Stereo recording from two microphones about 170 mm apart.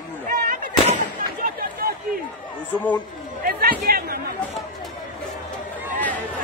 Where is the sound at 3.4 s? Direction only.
60° right (ahead or behind).